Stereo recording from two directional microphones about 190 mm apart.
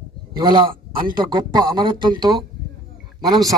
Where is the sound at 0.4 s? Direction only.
25° right (ahead or behind).